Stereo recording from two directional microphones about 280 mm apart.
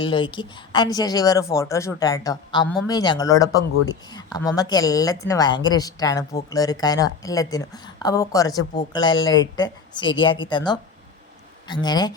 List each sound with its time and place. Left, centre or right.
0.0 s speech: centre